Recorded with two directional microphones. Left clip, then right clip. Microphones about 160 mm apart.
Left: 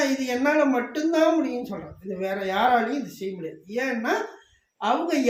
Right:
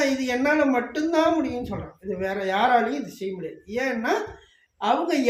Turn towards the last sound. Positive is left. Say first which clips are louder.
# right 1 dB
turn(degrees=-25)  # may be behind; listen again after turning